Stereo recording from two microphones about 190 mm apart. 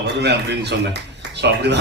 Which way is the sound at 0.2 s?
60° right (ahead or behind).